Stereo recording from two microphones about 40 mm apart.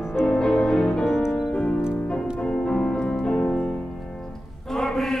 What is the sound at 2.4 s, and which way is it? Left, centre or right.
Music, left.